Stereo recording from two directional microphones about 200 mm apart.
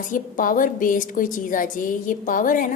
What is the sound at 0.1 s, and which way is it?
A woman's voice, 40° left (ahead or behind).